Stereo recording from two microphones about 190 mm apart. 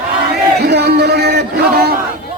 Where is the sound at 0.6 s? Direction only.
60° right (ahead or behind).